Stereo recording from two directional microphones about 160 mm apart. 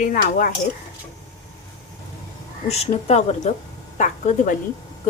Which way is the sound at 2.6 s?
40° left (ahead or behind).